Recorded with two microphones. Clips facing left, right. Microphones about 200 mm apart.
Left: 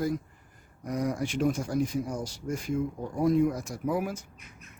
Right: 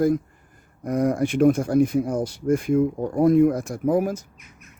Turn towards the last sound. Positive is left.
turn(degrees=-45)  # may be behind; listen again after turning